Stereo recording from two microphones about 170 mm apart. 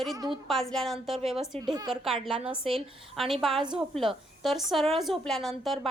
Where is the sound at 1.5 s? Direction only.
25° right (ahead or behind).